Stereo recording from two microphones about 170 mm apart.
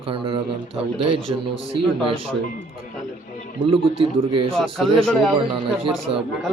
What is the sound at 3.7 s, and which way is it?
Speech, 30° right (ahead or behind).